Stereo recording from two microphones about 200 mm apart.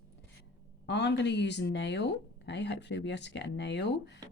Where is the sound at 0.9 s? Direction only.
60° left (ahead or behind).